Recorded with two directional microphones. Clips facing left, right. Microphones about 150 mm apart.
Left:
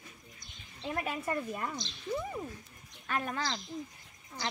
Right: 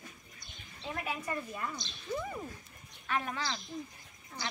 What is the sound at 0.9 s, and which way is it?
Speech, 50° left (ahead or behind).